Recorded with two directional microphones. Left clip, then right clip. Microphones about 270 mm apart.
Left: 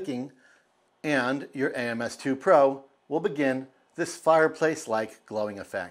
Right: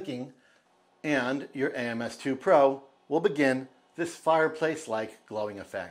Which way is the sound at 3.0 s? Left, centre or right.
Centre.